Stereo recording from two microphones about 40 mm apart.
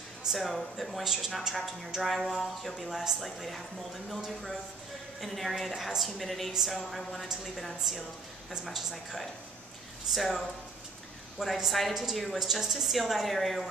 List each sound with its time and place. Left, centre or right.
0.2 s a woman's voice: centre
1.0 s a woman's voice: centre
6.5 s speech: centre
6.9 s a woman's voice: centre